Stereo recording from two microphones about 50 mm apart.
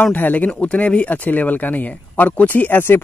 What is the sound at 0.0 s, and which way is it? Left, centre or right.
Speech, left.